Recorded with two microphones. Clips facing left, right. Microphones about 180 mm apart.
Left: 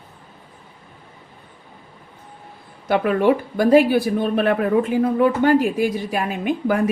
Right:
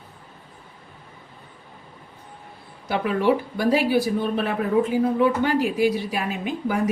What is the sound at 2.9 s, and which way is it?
A woman's voice, 55° left (ahead or behind).